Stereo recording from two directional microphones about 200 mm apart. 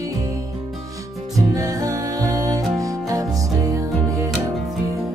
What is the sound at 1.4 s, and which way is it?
Music, 15° right (ahead or behind).